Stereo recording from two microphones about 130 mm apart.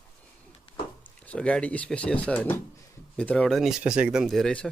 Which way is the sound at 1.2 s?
10° left (ahead or behind).